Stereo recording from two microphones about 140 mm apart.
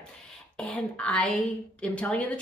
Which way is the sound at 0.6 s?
10° left (ahead or behind).